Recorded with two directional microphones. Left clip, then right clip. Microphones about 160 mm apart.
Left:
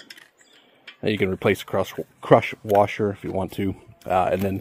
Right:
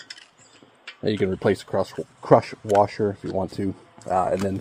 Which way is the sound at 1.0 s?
Centre (ahead or behind).